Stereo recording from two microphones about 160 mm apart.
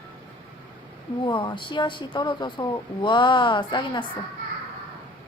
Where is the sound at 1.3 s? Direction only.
30° left (ahead or behind).